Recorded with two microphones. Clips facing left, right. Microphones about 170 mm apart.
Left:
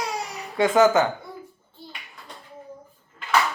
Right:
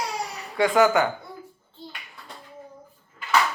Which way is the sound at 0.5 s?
20° left (ahead or behind).